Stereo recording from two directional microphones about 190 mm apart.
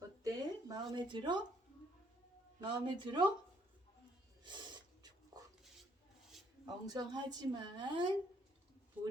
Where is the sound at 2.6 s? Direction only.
25° right (ahead or behind).